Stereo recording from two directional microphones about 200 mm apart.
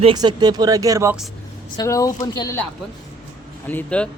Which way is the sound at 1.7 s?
15° left (ahead or behind).